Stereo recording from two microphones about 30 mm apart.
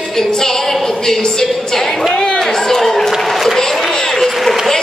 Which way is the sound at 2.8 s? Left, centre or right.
Centre.